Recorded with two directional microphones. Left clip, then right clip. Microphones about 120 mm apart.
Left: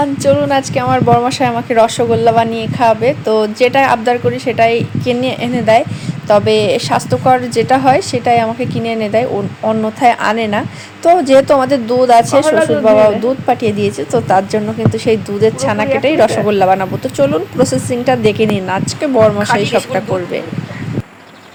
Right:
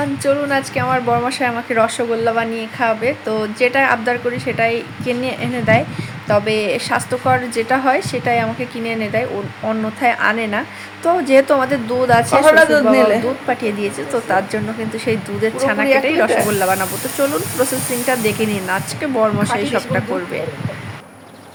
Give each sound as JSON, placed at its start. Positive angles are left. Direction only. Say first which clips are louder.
{"t": 0.3, "sound": "a woman's voice", "louder": "left 5 dB", "side_deg": 35}
{"t": 12.5, "sound": "speech", "louder": "right 2 dB", "side_deg": -35}
{"t": 13.5, "sound": "a woman's voice", "louder": "left 6 dB", "side_deg": 35}